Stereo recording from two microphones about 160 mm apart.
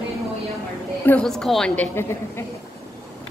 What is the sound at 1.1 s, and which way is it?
A woman's voice, 5° left (ahead or behind).